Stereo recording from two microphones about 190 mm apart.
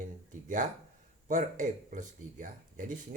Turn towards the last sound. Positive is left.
turn(degrees=-40)  # may be behind; listen again after turning